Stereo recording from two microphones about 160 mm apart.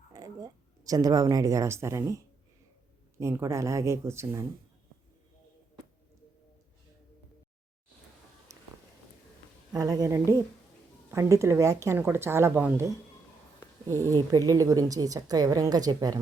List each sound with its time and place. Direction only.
0.1 s speech: 20° right (ahead or behind)
9.7 s a woman's voice: 25° right (ahead or behind)
14.2 s a woman's voice: 20° right (ahead or behind)